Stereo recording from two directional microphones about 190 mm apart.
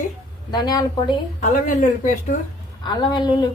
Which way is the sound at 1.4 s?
40° left (ahead or behind).